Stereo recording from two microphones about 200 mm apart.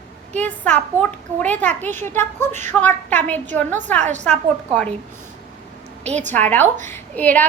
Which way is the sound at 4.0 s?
35° right (ahead or behind).